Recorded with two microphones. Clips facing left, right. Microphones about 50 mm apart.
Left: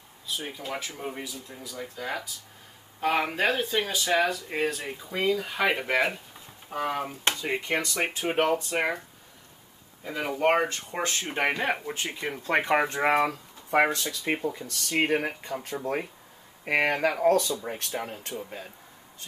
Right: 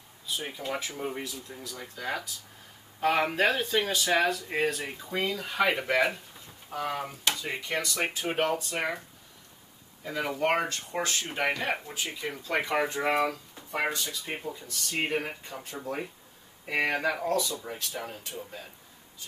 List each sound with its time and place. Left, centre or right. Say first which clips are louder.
0.4 s speech: right 1 dB; centre
6.7 s speech: left 3 dB; left
10.0 s speech: left 3 dB; centre
11.0 s speech: left 2 dB; left
11.9 s speech: left 3 dB; left
13.9 s speech: left 5 dB; left